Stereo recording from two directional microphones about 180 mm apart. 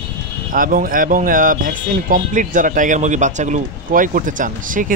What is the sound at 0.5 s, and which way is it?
Speech, 50° right (ahead or behind).